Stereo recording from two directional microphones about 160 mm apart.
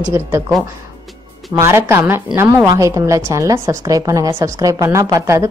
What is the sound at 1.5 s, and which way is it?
A woman's voice, 15° right (ahead or behind).